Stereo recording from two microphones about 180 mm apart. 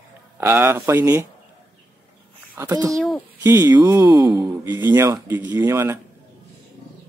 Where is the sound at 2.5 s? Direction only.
20° right (ahead or behind).